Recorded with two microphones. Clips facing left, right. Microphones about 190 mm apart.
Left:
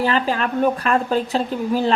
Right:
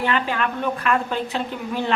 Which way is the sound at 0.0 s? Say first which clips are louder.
Left 3 dB; 35° left (ahead or behind).